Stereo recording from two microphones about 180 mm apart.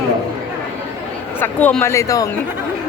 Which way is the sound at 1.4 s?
10° left (ahead or behind).